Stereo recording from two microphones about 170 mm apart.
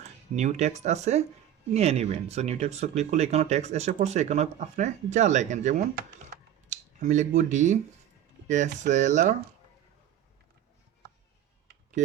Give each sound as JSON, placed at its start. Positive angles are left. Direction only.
{"t": 0.3, "sound": "speech", "side_deg": -40}